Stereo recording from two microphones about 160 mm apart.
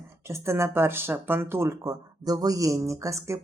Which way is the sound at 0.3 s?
15° right (ahead or behind).